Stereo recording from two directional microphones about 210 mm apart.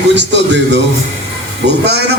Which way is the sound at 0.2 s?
55° right (ahead or behind).